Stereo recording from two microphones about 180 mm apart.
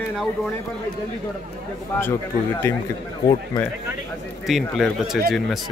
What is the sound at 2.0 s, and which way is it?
Speech, 15° left (ahead or behind).